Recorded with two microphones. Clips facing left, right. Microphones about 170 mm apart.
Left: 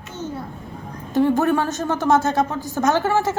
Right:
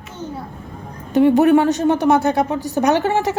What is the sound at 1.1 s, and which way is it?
A woman's voice, 20° right (ahead or behind).